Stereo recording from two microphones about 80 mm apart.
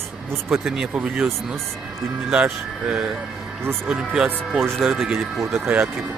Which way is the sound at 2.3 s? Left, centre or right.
Centre.